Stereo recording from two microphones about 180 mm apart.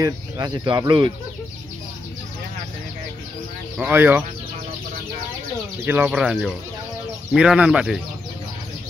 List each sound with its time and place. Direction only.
0.0 s speech: 20° right (ahead or behind)
3.7 s speech: 10° right (ahead or behind)
5.9 s speech: 10° right (ahead or behind)